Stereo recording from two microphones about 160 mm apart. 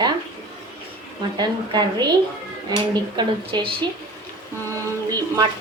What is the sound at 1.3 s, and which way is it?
Speech, 25° right (ahead or behind).